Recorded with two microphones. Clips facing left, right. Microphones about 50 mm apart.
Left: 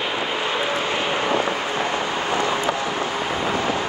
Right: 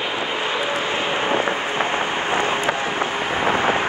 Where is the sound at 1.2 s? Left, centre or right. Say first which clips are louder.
Right 1 dB; right.